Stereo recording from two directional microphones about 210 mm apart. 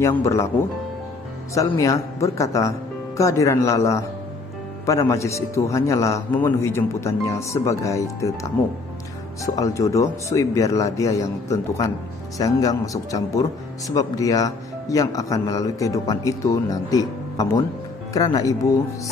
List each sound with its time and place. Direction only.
0.0 s speech: 15° left (ahead or behind)